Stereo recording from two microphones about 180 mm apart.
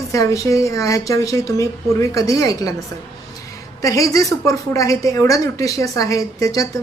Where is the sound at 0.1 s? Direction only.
20° left (ahead or behind).